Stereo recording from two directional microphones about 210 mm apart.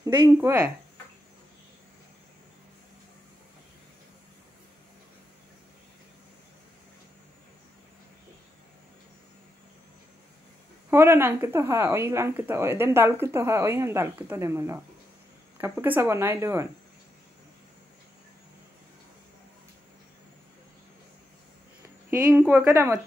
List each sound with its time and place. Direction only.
0.0 s speech: 15° right (ahead or behind)
10.9 s speech: 10° right (ahead or behind)
22.1 s speech: 10° right (ahead or behind)